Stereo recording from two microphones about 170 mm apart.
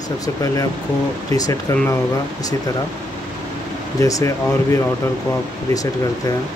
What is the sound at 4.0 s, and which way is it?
Speech, 20° left (ahead or behind).